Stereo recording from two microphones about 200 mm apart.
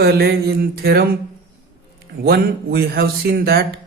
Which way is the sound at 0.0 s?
50° right (ahead or behind).